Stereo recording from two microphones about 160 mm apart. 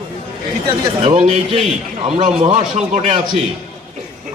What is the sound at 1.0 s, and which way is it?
A man's voice, 40° right (ahead or behind).